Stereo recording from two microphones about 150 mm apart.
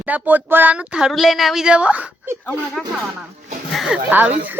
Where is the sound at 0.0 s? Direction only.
10° right (ahead or behind).